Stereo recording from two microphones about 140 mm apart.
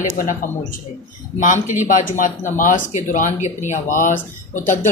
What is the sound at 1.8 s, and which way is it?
Speech, 70° left (ahead or behind).